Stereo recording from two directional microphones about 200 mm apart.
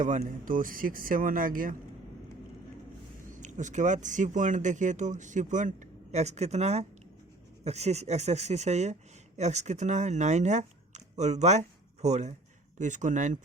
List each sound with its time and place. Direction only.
0.0 s speech: 40° right (ahead or behind)
3.2 s speech: 40° right (ahead or behind)